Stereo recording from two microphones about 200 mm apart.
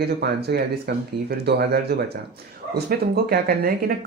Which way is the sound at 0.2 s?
55° right (ahead or behind).